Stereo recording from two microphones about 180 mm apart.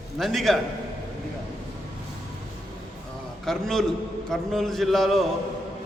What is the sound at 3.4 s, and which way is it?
A man's voice, centre (ahead or behind).